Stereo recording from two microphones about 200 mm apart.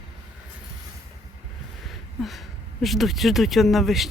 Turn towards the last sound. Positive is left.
turn(degrees=0)  # may be behind; listen again after turning